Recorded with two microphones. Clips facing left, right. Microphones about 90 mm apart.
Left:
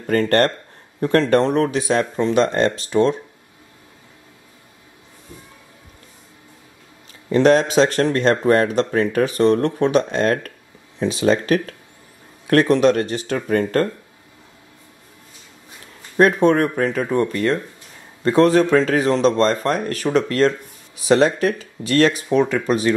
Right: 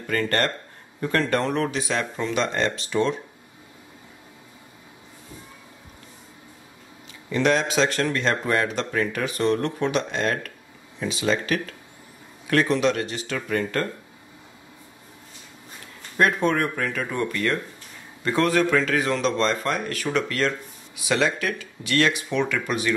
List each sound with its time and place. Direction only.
0.0 s speech: 40° left (ahead or behind)
1.5 s a man's voice: 40° left (ahead or behind)
7.2 s a man's voice: 40° left (ahead or behind)
16.4 s a man's voice: 40° left (ahead or behind)